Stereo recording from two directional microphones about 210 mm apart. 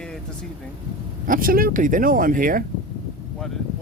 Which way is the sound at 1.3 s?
45° right (ahead or behind).